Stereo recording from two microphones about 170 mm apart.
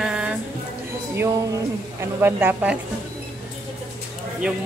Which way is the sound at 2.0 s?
10° right (ahead or behind).